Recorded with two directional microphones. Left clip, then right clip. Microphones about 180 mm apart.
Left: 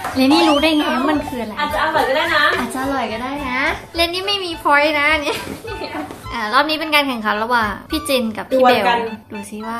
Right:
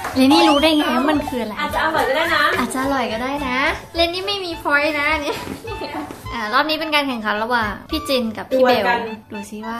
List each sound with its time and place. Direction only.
0.1 s a child's voice: 15° right (ahead or behind)
0.7 s a woman's voice: centre (ahead or behind)
2.7 s a woman's voice: 20° right (ahead or behind)
3.9 s a woman's voice: centre (ahead or behind)